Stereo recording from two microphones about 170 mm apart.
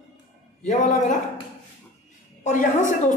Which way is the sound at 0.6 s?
45° left (ahead or behind).